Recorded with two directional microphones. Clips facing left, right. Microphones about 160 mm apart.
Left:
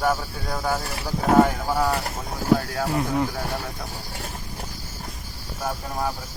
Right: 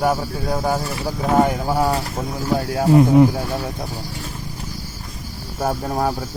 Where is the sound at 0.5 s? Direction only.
20° right (ahead or behind).